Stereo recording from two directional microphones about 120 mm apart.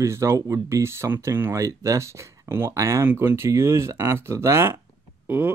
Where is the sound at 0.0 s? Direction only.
25° right (ahead or behind).